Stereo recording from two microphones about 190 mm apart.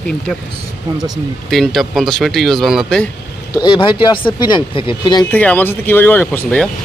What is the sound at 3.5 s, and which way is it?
Speech, 25° left (ahead or behind).